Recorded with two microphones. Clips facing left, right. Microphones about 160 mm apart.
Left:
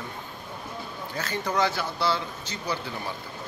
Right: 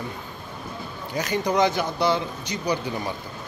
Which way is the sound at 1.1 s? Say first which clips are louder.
Right 5 dB; 15° right (ahead or behind).